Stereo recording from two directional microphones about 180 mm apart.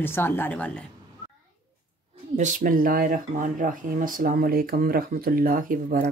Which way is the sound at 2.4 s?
45° right (ahead or behind).